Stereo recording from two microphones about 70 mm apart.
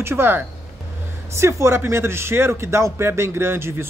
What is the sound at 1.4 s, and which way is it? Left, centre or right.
A man's voice, right.